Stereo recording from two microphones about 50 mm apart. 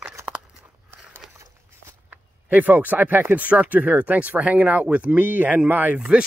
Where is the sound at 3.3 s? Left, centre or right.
Right.